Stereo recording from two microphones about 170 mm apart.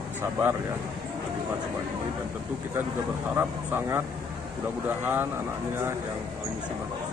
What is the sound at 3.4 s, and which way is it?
Speech, 10° right (ahead or behind).